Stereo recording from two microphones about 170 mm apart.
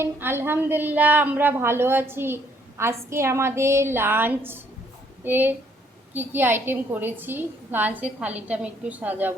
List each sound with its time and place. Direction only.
0.0 s a woman's voice: 15° right (ahead or behind)